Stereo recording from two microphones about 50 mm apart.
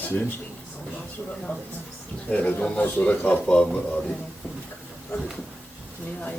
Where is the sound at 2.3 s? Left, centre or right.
Left.